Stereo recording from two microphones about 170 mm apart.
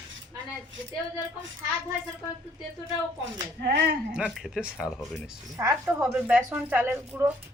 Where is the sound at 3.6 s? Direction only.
75° right (ahead or behind).